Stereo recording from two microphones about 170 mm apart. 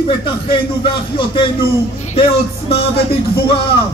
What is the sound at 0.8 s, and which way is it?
Speech, 30° left (ahead or behind).